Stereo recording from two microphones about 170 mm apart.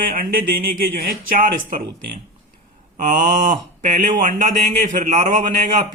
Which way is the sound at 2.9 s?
50° right (ahead or behind).